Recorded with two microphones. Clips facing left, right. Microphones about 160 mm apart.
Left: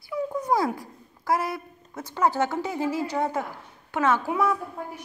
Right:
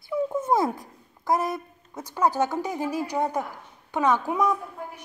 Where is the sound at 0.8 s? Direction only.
20° right (ahead or behind).